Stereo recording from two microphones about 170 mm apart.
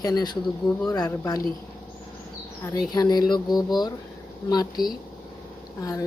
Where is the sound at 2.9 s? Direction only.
25° left (ahead or behind).